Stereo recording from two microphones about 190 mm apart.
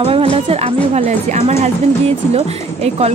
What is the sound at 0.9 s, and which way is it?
A woman's voice, 35° right (ahead or behind).